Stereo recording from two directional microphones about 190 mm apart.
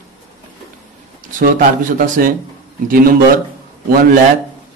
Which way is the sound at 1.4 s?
45° right (ahead or behind).